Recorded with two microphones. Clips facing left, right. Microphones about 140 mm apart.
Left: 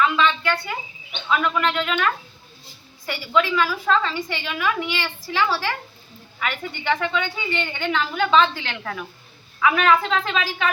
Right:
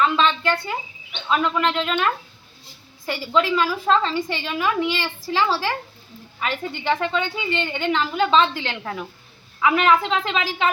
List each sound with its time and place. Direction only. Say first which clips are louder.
0.0 s a woman's voice: right 1 dB; 35° right (ahead or behind)
3.1 s a woman's voice: right 1 dB; 35° right (ahead or behind)